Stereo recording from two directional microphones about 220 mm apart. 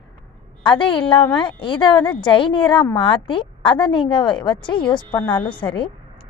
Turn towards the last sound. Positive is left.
turn(degrees=20)  # may be behind; listen again after turning